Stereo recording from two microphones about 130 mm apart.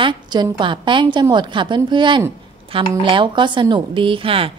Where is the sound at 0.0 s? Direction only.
35° right (ahead or behind).